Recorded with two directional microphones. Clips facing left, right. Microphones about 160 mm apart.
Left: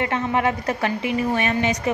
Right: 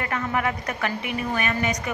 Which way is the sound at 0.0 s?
25° left (ahead or behind).